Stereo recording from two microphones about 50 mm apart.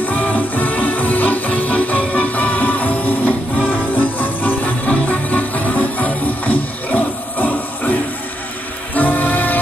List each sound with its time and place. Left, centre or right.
0.0 s music: left